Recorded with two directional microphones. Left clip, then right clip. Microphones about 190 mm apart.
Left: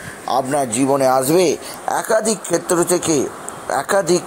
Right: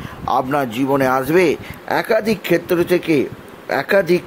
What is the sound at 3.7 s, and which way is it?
Speech, 30° right (ahead or behind).